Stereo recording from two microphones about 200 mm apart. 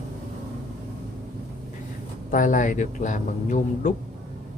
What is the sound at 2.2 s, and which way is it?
A man's voice, 40° left (ahead or behind).